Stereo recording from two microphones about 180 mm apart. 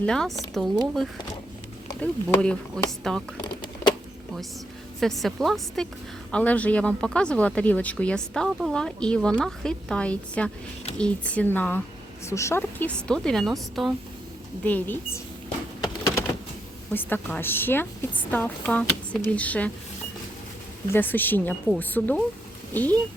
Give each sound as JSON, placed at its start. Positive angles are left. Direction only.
{"t": 0.0, "sound": "a woman's voice", "side_deg": 5}
{"t": 2.0, "sound": "a woman's voice", "side_deg": 5}
{"t": 3.4, "sound": "a sound", "side_deg": 25}
{"t": 4.9, "sound": "a woman's voice", "side_deg": 0}
{"t": 15.8, "sound": "a sound", "side_deg": 15}
{"t": 16.9, "sound": "speech", "side_deg": 10}
{"t": 20.9, "sound": "speech", "side_deg": 10}